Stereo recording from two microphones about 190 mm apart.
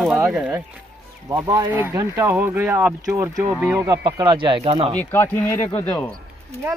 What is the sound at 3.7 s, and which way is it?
Speech, 20° right (ahead or behind).